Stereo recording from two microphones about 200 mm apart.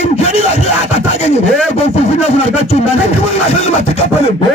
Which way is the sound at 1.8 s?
30° left (ahead or behind).